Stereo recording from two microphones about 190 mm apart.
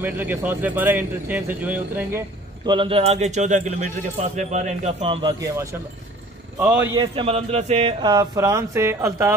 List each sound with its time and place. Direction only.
0.0 s speech: 10° right (ahead or behind)
2.6 s speech: 25° right (ahead or behind)
5.4 s speech: 15° right (ahead or behind)
7.0 s speech: 30° right (ahead or behind)
8.0 s speech: 20° right (ahead or behind)